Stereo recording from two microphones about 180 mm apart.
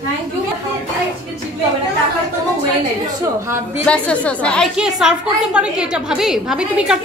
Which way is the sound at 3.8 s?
5° left (ahead or behind).